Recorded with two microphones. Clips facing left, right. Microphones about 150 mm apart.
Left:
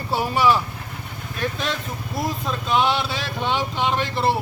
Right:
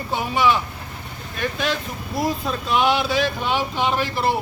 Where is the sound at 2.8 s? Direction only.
5° right (ahead or behind).